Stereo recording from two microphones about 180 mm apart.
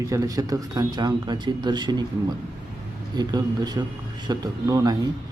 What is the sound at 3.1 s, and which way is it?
Speech, 25° right (ahead or behind).